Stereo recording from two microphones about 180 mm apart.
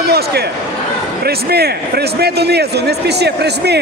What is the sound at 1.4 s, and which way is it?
A man's voice, 60° right (ahead or behind).